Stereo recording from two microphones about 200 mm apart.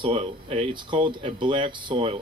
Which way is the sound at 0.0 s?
30° right (ahead or behind).